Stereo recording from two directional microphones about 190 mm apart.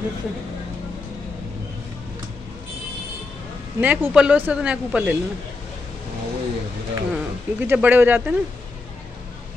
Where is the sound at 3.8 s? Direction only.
10° right (ahead or behind).